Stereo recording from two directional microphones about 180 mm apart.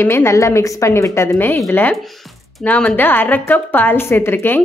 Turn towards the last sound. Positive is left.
turn(degrees=10)  # may be behind; listen again after turning